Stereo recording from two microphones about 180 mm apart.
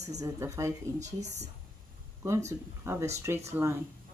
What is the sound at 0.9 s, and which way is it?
Speech, 40° right (ahead or behind).